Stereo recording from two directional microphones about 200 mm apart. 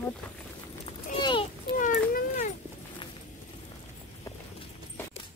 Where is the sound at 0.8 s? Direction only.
25° left (ahead or behind).